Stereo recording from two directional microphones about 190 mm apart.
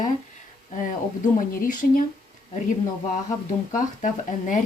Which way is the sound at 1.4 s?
45° left (ahead or behind).